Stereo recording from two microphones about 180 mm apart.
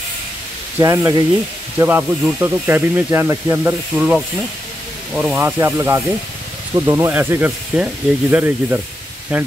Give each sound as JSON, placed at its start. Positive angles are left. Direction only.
{"t": 0.7, "sound": "speech", "side_deg": -20}